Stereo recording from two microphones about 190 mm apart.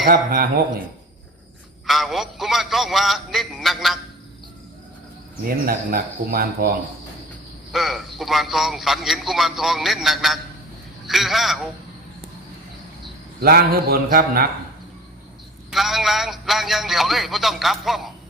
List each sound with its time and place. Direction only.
0.1 s speech: 50° right (ahead or behind)
1.9 s a man's voice: centre (ahead or behind)
5.5 s speech: 50° right (ahead or behind)
7.7 s a man's voice: centre (ahead or behind)
13.4 s speech: 55° right (ahead or behind)
15.7 s a man's voice: centre (ahead or behind)